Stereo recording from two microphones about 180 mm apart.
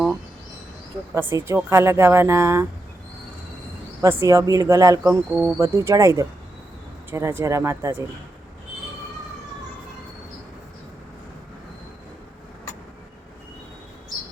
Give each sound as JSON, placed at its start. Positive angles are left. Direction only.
{"t": 1.1, "sound": "speech", "side_deg": -15}
{"t": 4.3, "sound": "speech", "side_deg": -20}